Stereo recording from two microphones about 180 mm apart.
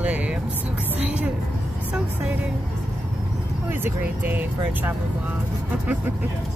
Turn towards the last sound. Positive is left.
turn(degrees=-10)  # may be behind; listen again after turning